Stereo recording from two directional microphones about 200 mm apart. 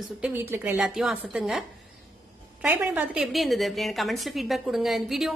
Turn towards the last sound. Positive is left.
turn(degrees=0)  # may be behind; listen again after turning